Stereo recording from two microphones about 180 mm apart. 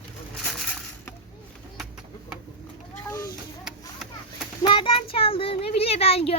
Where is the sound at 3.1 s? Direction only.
15° left (ahead or behind).